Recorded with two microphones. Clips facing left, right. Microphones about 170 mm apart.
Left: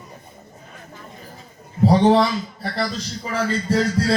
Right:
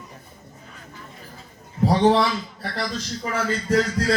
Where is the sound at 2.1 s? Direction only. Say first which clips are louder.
Left 3 dB; 35° left (ahead or behind).